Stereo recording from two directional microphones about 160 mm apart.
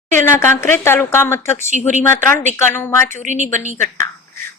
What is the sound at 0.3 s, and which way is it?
Speech, 15° left (ahead or behind).